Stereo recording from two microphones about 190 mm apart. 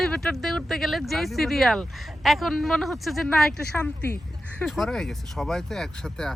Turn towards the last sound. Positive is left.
turn(degrees=5)  # may be behind; listen again after turning